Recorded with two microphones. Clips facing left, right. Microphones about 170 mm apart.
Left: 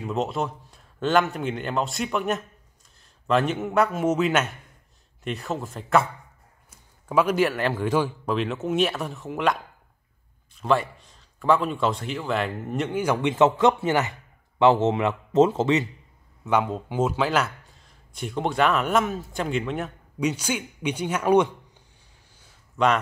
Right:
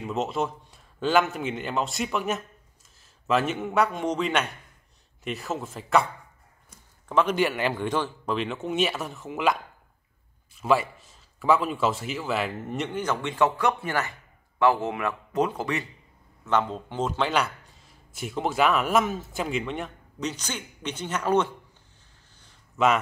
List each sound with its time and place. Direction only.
0.0 s a man's voice: centre (ahead or behind); by 15.8 s 25° left (ahead or behind)
16.4 s a man's voice: 10° left (ahead or behind)
22.8 s a man's voice: centre (ahead or behind)